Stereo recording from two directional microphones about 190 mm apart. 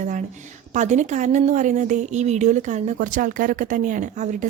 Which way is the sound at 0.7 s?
40° right (ahead or behind).